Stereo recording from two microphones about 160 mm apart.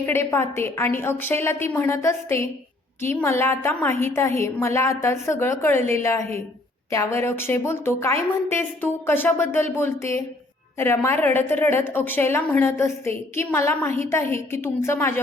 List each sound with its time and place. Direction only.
0.0 s a woman's voice: 15° left (ahead or behind)